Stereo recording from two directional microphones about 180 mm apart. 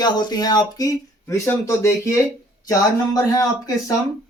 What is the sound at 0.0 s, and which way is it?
Speech, 25° left (ahead or behind).